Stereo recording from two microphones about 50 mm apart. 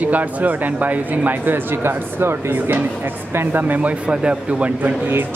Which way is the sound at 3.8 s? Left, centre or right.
Right.